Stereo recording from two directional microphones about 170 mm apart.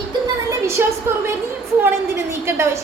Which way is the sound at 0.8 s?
15° right (ahead or behind).